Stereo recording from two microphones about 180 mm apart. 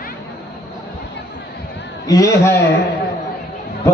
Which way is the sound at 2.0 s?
20° left (ahead or behind).